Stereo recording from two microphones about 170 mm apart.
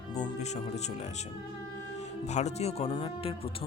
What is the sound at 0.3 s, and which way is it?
Speech, 40° left (ahead or behind).